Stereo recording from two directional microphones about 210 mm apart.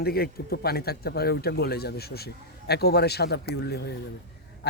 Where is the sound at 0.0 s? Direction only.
45° left (ahead or behind).